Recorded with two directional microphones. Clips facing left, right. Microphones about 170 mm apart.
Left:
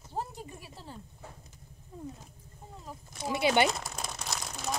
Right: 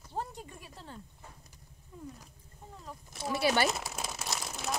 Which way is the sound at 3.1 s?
20° left (ahead or behind).